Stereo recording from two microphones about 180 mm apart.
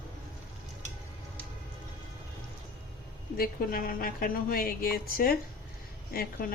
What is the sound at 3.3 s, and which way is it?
A woman's voice, 55° left (ahead or behind).